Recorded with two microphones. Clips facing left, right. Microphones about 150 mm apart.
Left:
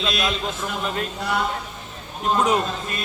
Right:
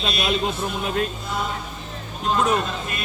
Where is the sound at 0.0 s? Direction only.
90° left.